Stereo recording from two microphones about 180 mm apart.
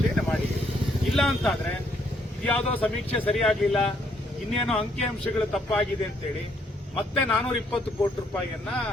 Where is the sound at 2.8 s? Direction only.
5° left (ahead or behind).